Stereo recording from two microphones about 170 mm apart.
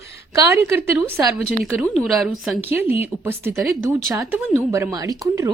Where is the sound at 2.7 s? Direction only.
15° right (ahead or behind).